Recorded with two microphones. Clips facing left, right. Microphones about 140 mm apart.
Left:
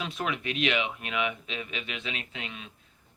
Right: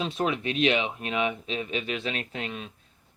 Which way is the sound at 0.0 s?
30° right (ahead or behind).